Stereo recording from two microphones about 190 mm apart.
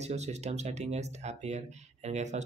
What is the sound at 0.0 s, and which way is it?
Speech, 35° right (ahead or behind).